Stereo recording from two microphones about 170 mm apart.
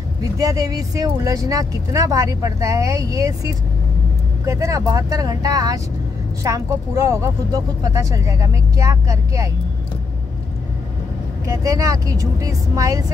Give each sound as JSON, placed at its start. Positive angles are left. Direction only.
{"t": 0.4, "sound": "speech", "side_deg": -20}
{"t": 11.4, "sound": "speech", "side_deg": -20}